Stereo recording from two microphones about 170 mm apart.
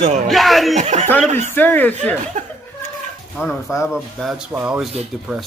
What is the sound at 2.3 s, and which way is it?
Speech, 50° right (ahead or behind).